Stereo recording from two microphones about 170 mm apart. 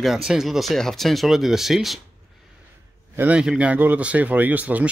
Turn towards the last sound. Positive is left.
turn(degrees=-10)  # may be behind; listen again after turning